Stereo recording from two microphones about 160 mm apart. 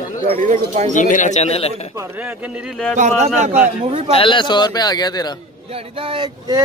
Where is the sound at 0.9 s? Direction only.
50° left (ahead or behind).